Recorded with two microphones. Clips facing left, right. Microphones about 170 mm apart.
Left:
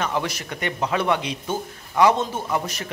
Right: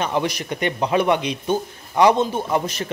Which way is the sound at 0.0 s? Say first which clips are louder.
Right 3 dB; 20° right (ahead or behind).